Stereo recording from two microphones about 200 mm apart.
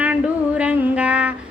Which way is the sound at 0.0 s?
5° right (ahead or behind).